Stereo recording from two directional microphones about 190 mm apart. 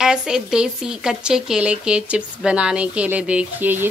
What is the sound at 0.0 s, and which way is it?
Speech, 5° right (ahead or behind).